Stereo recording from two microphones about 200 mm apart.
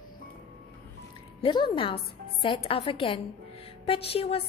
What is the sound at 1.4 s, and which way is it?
A woman's voice, 25° left (ahead or behind).